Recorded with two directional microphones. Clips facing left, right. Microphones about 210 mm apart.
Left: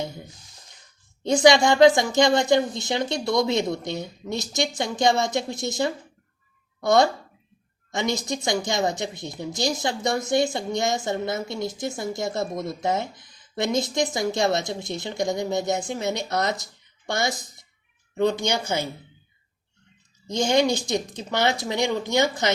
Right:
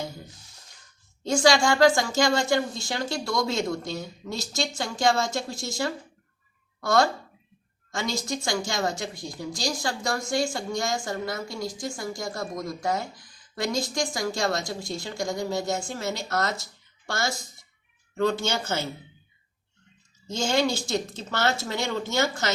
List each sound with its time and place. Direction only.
1.2 s a woman's voice: 20° left (ahead or behind)
20.2 s speech: 15° left (ahead or behind)